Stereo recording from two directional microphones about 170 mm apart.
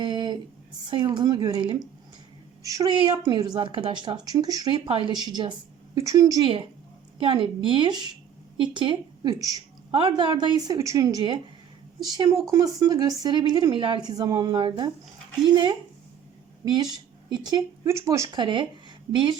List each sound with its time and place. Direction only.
0.0 s a sound: 25° right (ahead or behind)
0.9 s a woman's voice: 25° right (ahead or behind)
18.3 s a woman's voice: 30° right (ahead or behind)